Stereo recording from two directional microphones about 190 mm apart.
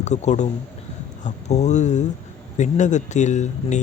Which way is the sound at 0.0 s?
35° left (ahead or behind).